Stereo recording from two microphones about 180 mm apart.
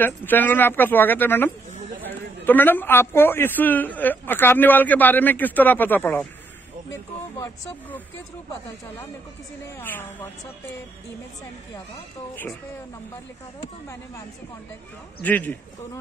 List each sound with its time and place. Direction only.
0.0 s a man's voice: 10° left (ahead or behind)
9.8 s a man's voice: 10° left (ahead or behind)
15.2 s a man's voice: 10° left (ahead or behind)